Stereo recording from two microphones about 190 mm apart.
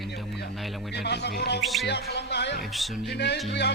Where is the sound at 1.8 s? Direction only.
60° left (ahead or behind).